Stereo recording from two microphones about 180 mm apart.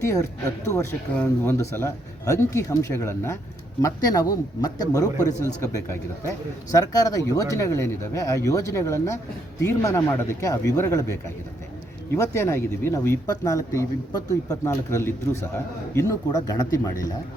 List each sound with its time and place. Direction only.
0.0 s speech: 15° left (ahead or behind)
12.1 s speech: 15° left (ahead or behind)